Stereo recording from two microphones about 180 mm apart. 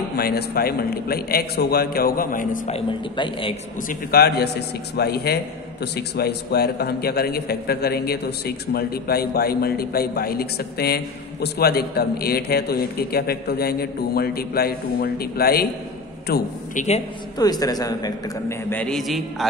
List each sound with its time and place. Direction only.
0.1 s a man's voice: 60° left (ahead or behind)
2.7 s a man's voice: 30° left (ahead or behind)
3.9 s a man's voice: 60° left (ahead or behind)
16.7 s a man's voice: 40° left (ahead or behind)
17.4 s a man's voice: 20° left (ahead or behind); by 19.5 s centre (ahead or behind)